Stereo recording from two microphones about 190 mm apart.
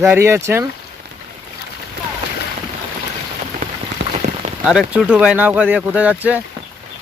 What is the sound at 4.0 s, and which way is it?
Rain on surface, 65° right (ahead or behind).